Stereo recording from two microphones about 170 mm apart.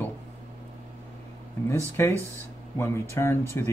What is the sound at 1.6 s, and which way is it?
Speech, 15° left (ahead or behind).